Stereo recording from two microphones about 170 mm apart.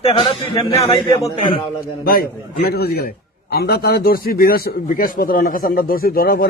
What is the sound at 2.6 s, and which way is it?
A man's voice, 65° left (ahead or behind).